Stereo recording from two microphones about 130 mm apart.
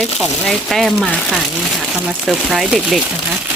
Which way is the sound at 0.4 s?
Centre (ahead or behind).